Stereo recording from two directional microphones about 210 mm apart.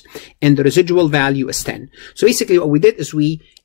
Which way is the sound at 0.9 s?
45° left (ahead or behind).